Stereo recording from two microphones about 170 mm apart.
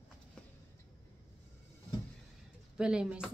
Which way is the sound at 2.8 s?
5° right (ahead or behind).